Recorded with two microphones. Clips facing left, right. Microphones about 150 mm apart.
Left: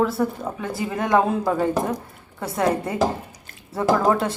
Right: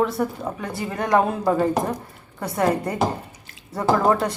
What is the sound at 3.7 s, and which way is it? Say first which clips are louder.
Speech: even; centre (ahead or behind).